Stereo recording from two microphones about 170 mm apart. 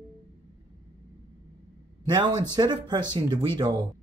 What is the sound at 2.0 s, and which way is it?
Speech, 25° right (ahead or behind).